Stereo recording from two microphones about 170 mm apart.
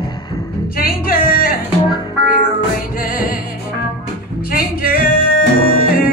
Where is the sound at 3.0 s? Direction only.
55° left (ahead or behind).